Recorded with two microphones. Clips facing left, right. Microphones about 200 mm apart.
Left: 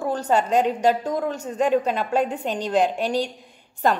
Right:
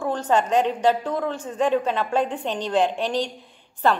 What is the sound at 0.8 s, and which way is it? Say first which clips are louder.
Speech: even; 40° left (ahead or behind).